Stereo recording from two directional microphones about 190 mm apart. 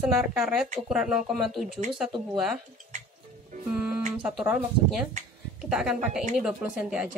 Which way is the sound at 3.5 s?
40° right (ahead or behind).